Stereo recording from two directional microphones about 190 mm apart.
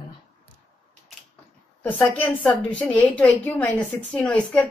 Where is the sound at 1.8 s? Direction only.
10° left (ahead or behind).